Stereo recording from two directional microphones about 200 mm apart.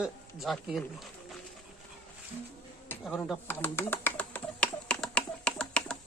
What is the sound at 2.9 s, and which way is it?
Speech, 5° left (ahead or behind).